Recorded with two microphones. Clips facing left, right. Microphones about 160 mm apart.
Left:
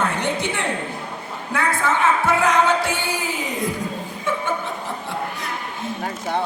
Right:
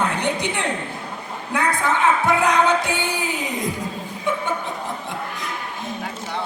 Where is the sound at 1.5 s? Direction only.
15° right (ahead or behind).